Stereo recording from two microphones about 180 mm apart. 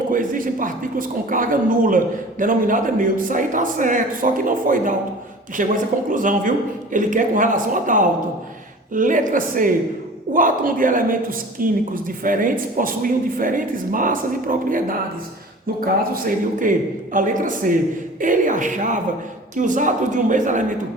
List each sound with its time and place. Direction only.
0.1 s a man's voice: 50° right (ahead or behind)